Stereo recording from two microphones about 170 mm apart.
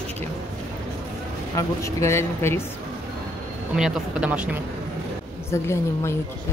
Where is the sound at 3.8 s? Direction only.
5° right (ahead or behind).